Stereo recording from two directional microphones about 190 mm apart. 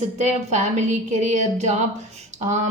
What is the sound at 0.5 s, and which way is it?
A woman's voice, 35° right (ahead or behind).